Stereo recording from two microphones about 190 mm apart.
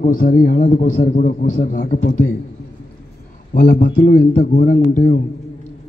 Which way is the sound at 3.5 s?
45° left (ahead or behind).